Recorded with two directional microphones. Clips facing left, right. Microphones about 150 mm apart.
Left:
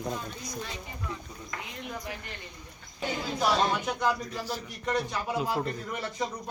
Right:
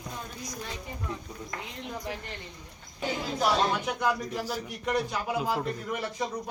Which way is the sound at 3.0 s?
5° right (ahead or behind).